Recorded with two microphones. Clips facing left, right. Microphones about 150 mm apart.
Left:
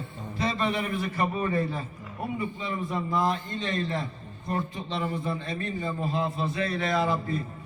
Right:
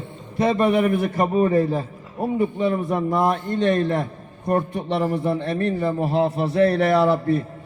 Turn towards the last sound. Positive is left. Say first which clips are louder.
# right 9 dB
turn(degrees=-70)  # may be behind; listen again after turning